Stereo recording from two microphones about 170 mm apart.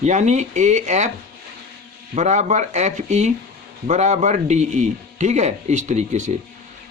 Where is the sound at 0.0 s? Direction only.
45° right (ahead or behind).